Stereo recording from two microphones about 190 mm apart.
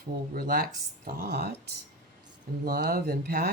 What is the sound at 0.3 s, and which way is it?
Speech, 50° right (ahead or behind).